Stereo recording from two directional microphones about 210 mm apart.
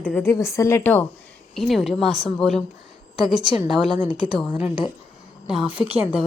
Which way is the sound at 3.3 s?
20° right (ahead or behind).